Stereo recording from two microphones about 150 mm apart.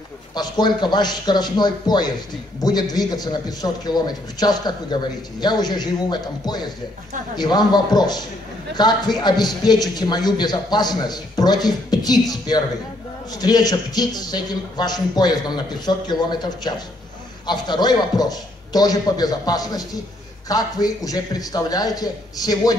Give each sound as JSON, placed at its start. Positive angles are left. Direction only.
{"t": 0.3, "sound": "a man's voice", "side_deg": 30}